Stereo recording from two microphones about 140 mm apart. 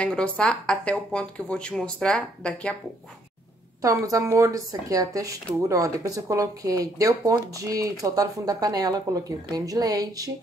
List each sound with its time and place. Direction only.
0.0 s a woman's voice: 5° left (ahead or behind)
3.8 s speech: 25° right (ahead or behind)